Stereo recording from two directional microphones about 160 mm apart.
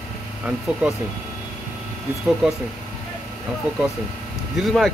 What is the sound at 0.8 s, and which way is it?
Speech, 5° right (ahead or behind).